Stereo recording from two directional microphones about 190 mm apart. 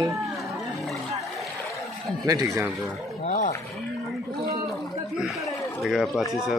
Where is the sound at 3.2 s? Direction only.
40° left (ahead or behind).